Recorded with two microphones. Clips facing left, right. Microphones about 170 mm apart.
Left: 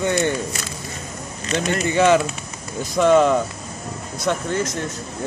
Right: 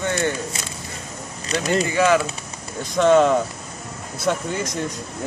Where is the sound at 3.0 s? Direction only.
Centre (ahead or behind).